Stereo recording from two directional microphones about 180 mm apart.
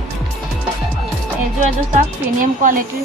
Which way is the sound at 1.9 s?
45° right (ahead or behind).